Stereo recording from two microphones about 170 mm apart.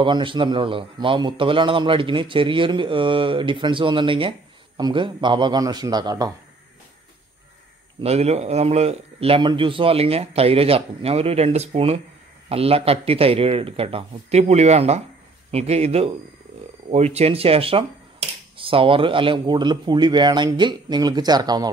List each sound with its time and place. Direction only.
0.0 s a man's voice: 30° right (ahead or behind)
8.0 s a man's voice: 35° right (ahead or behind)